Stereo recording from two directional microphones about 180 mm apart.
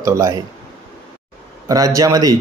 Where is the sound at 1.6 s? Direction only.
20° right (ahead or behind).